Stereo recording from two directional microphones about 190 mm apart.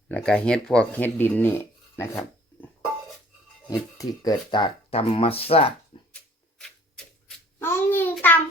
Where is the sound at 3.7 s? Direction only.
20° left (ahead or behind).